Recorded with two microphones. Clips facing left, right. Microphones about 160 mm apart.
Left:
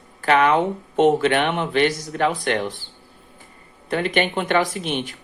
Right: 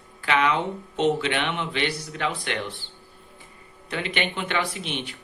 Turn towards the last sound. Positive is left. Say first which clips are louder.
# left 6 dB
turn(degrees=45)  # may be behind; listen again after turning